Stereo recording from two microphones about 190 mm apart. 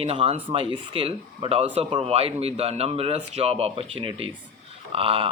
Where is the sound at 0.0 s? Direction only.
30° right (ahead or behind).